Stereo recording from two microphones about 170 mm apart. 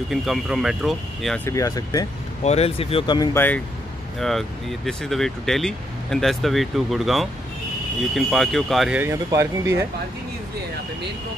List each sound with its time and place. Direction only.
0.1 s speech: centre (ahead or behind)
1.4 s speech: 20° left (ahead or behind)
2.4 s speech: 40° left (ahead or behind)
3.2 s speech: 10° left (ahead or behind)
9.0 s speech: 15° right (ahead or behind)